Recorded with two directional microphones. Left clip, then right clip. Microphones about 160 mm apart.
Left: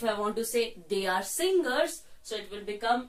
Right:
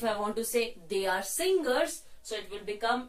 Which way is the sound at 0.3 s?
25° left (ahead or behind).